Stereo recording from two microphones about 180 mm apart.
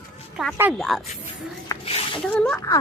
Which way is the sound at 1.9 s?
30° left (ahead or behind).